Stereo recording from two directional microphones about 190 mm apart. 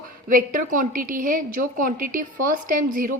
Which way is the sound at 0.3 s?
45° right (ahead or behind).